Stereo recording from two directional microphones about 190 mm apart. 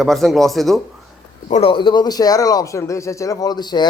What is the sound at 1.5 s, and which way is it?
Speech, 30° left (ahead or behind).